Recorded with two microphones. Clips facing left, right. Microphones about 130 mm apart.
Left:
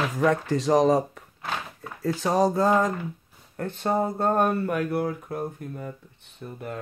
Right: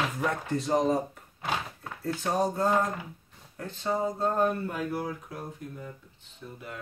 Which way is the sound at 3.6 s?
60° left (ahead or behind).